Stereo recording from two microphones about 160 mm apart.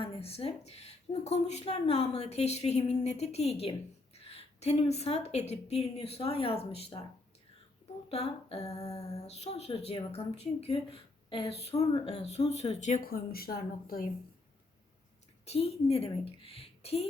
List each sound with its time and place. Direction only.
0.0 s a woman's voice: 40° left (ahead or behind)
8.1 s a woman's voice: 40° left (ahead or behind)
13.1 s speech: 70° left (ahead or behind)
15.4 s a woman's voice: 40° left (ahead or behind)